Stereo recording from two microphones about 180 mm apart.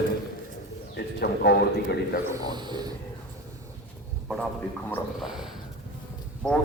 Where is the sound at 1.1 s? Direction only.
65° left (ahead or behind).